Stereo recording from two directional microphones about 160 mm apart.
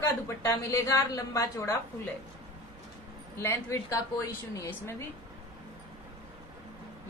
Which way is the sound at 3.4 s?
15° left (ahead or behind).